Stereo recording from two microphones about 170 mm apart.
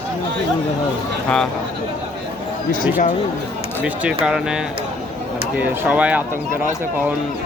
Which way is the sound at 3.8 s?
5° right (ahead or behind).